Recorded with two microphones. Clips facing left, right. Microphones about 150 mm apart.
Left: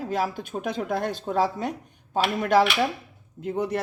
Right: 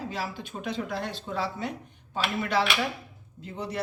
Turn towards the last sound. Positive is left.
turn(degrees=55)  # may be behind; listen again after turning